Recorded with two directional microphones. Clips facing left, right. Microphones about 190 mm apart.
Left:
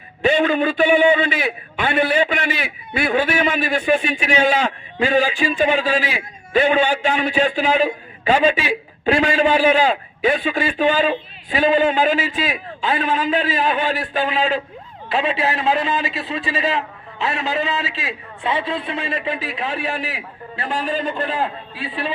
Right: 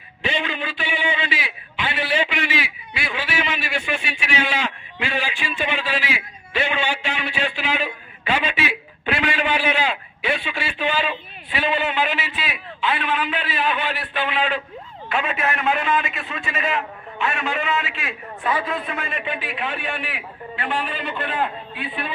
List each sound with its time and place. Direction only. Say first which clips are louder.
0.2 s a man's voice: left 10 dB; 45° left (ahead or behind)